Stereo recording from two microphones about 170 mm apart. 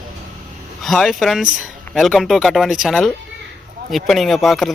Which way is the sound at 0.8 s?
Centre (ahead or behind).